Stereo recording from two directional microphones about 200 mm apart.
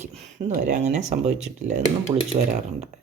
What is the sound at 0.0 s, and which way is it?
Speech, 35° right (ahead or behind).